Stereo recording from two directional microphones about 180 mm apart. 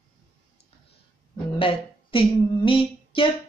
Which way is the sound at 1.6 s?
30° left (ahead or behind).